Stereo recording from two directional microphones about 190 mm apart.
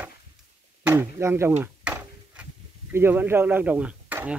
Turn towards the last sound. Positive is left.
turn(degrees=-10)  # may be behind; listen again after turning